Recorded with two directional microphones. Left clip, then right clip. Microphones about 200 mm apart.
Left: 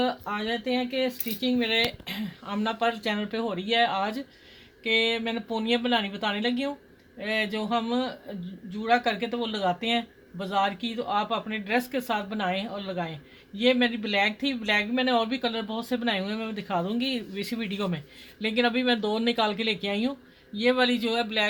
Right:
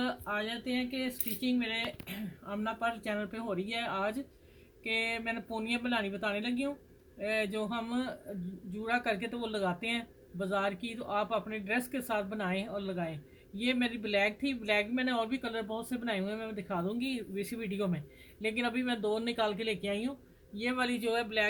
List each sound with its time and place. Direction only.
0.0 s speech: 50° left (ahead or behind)